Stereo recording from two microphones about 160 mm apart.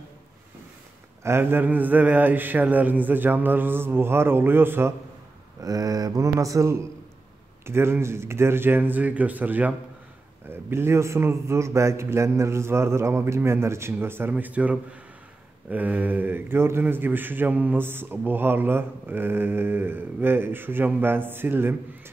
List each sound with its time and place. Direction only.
1.2 s a man's voice: 15° right (ahead or behind)
5.6 s a sound: 20° right (ahead or behind)
7.6 s a man's voice: 15° right (ahead or behind)